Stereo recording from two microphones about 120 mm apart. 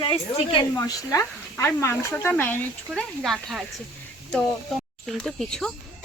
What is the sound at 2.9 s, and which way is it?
Speech, centre (ahead or behind).